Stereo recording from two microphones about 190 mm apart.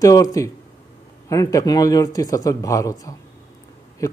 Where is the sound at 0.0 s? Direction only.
20° left (ahead or behind).